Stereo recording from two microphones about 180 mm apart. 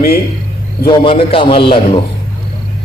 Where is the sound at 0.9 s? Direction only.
30° left (ahead or behind).